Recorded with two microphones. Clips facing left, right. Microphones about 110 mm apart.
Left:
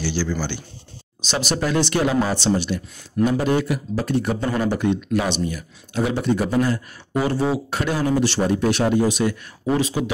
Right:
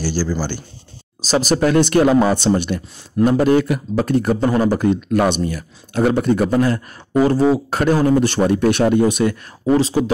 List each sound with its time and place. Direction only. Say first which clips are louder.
0.0 s a man's voice: right 3 dB; 40° right (ahead or behind); by 6.8 s 60° right (ahead or behind)
7.2 s speech: right 7 dB; 40° right (ahead or behind)
9.8 s speech: right 5 dB; 35° right (ahead or behind)